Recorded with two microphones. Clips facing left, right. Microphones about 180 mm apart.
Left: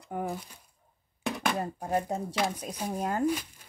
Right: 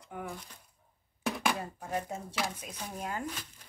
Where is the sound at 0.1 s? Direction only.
40° left (ahead or behind).